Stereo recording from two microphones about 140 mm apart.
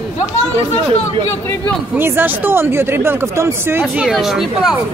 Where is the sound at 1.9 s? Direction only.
15° right (ahead or behind).